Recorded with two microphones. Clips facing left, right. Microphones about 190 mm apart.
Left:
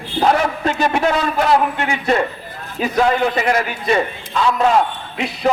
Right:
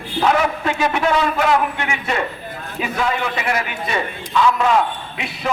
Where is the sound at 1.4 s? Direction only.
35° left (ahead or behind).